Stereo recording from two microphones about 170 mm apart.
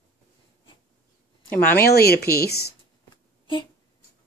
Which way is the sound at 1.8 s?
65° left (ahead or behind).